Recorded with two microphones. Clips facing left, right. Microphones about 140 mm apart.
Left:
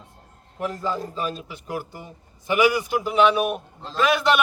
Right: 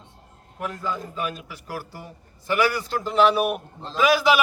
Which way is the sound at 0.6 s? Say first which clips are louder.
Left 3 dB; 35° left (ahead or behind).